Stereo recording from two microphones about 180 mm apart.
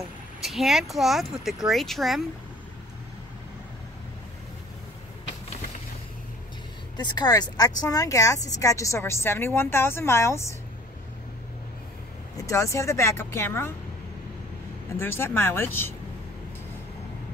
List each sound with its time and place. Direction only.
0.4 s speech: centre (ahead or behind)
7.0 s a woman's voice: 25° left (ahead or behind)
12.4 s a woman's voice: 15° left (ahead or behind)
14.9 s a woman's voice: 15° left (ahead or behind)